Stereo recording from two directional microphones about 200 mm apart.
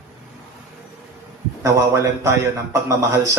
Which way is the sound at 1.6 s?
15° right (ahead or behind).